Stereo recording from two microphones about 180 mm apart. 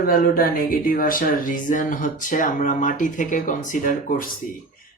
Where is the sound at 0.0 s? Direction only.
50° left (ahead or behind).